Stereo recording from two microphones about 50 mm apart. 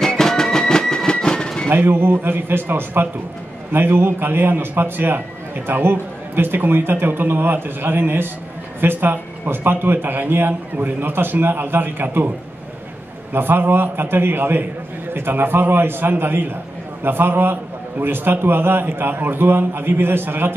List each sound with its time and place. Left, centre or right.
0.0 s music: centre
1.7 s a man's voice: right
13.3 s a man's voice: right